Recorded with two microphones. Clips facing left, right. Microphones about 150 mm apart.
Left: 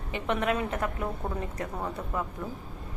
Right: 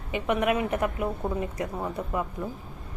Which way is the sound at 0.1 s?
15° right (ahead or behind).